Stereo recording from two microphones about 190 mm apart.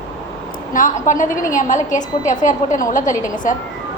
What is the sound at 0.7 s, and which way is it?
A woman's voice, 40° left (ahead or behind).